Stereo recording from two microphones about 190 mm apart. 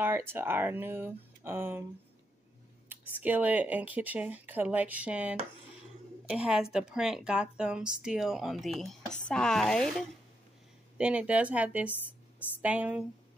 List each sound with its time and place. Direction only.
0.0 s speech: 10° right (ahead or behind)
2.9 s a woman's voice: 10° right (ahead or behind)